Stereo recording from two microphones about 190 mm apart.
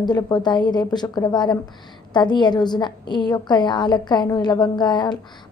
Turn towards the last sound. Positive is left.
turn(degrees=25)  # may be behind; listen again after turning